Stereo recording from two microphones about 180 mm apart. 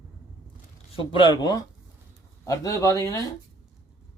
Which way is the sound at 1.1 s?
25° left (ahead or behind).